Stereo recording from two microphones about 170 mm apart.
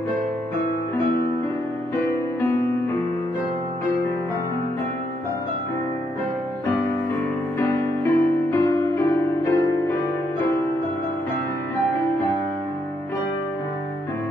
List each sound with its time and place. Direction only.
7.5 s music: 15° left (ahead or behind)